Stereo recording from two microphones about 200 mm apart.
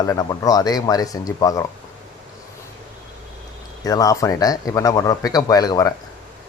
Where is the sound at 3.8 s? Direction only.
15° left (ahead or behind).